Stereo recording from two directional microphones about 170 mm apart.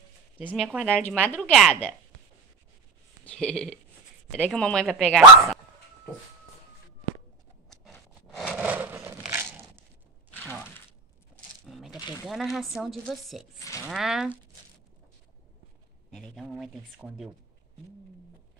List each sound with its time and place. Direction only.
0.6 s speech: 5° right (ahead or behind)
0.8 s a woman's voice: 5° left (ahead or behind)
3.3 s speech: 5° left (ahead or behind)
7.7 s scrape: centre (ahead or behind)
9.2 s a sound: 10° right (ahead or behind)
11.6 s a sound: centre (ahead or behind)
12.7 s speech: centre (ahead or behind)
13.6 s cattle: 20° left (ahead or behind)
13.8 s speech: 5° right (ahead or behind)
16.1 s speech: centre (ahead or behind)